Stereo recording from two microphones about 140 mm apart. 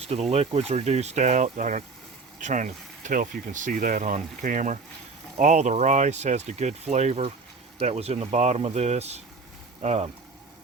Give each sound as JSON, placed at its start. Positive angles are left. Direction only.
{"t": 0.1, "sound": "speech", "side_deg": -50}